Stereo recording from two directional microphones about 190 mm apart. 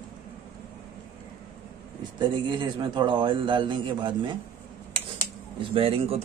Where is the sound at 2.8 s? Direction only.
25° right (ahead or behind).